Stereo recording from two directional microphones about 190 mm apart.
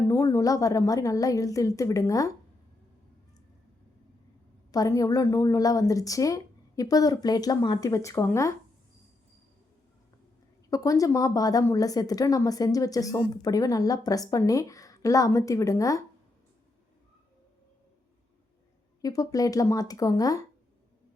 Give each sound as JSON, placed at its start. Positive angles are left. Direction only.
{"t": 0.1, "sound": "a woman's voice", "side_deg": 15}
{"t": 4.7, "sound": "a woman's voice", "side_deg": 20}
{"t": 10.7, "sound": "a woman's voice", "side_deg": 20}
{"t": 19.0, "sound": "a woman's voice", "side_deg": 20}